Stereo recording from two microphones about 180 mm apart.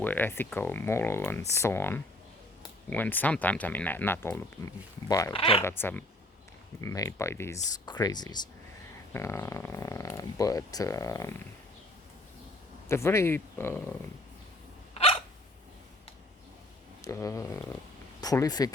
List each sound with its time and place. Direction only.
0.0 s speech: 10° left (ahead or behind)
5.4 s speech: 30° left (ahead or behind)
5.6 s speech: 10° left (ahead or behind)
12.9 s speech: 15° left (ahead or behind)
14.9 s dog: 30° left (ahead or behind)
17.0 s speech: 15° left (ahead or behind)